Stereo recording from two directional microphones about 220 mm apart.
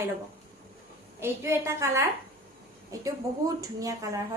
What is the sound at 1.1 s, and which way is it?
A woman's voice, 10° right (ahead or behind).